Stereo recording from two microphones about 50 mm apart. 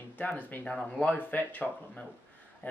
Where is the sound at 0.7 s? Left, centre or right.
Centre.